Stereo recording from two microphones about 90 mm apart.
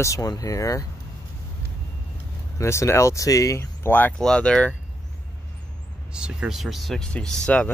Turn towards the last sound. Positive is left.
turn(degrees=10)  # may be behind; listen again after turning